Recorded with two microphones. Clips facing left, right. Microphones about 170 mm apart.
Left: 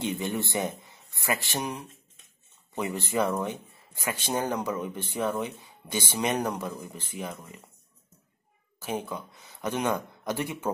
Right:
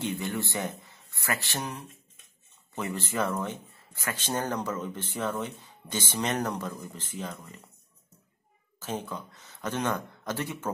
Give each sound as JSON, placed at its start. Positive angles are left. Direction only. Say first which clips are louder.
{"t": 0.0, "sound": "speech", "louder": "left 2 dB", "side_deg": 20}
{"t": 8.7, "sound": "speech", "louder": "left 2 dB", "side_deg": 10}